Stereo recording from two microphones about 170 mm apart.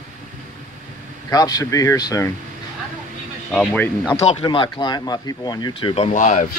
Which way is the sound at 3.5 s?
5° left (ahead or behind).